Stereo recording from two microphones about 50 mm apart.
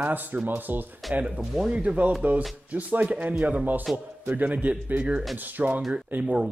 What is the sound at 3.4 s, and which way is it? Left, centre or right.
Speech, right.